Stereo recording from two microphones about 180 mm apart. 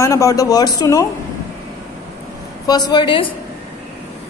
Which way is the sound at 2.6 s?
20° left (ahead or behind).